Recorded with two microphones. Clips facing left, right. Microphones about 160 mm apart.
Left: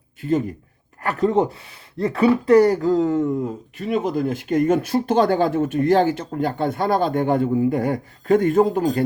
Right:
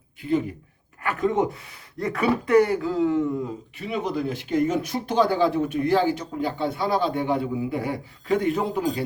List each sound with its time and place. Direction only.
0.2 s speech: 45° left (ahead or behind)
1.0 s speech: 30° left (ahead or behind)